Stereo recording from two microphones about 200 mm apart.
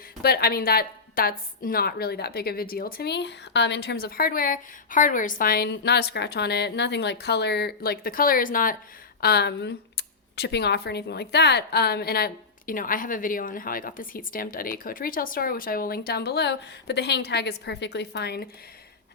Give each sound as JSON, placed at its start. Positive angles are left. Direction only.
{"t": 0.2, "sound": "speech", "side_deg": 50}
{"t": 9.2, "sound": "speech", "side_deg": 55}